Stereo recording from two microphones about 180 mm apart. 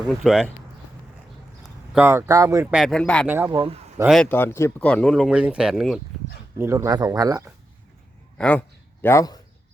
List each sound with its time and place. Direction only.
0.0 s speech: 5° left (ahead or behind)
1.9 s speech: 10° right (ahead or behind)
2.6 s speech: centre (ahead or behind)
3.2 s speech: 10° right (ahead or behind)
4.1 s speech: 10° left (ahead or behind)
6.6 s speech: 15° right (ahead or behind)
8.4 s speech: 5° left (ahead or behind)